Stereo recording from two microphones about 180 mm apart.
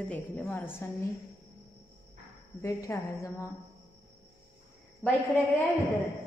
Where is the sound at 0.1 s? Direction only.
10° left (ahead or behind).